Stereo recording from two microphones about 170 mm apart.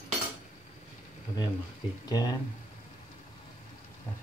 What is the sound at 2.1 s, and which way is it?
Speech, 20° left (ahead or behind).